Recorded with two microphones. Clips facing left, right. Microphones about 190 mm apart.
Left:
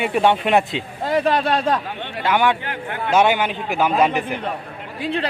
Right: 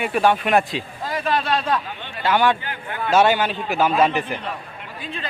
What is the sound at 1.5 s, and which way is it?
Speech, 50° left (ahead or behind).